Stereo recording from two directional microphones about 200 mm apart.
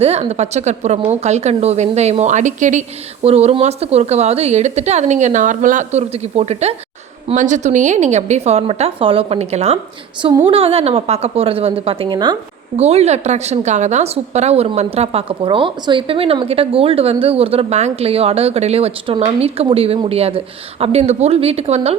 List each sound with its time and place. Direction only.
0.0 s a woman's voice: 30° right (ahead or behind)
12.7 s a woman's voice: 30° right (ahead or behind)